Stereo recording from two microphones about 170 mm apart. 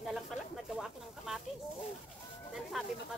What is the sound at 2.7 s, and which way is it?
Speech, centre (ahead or behind).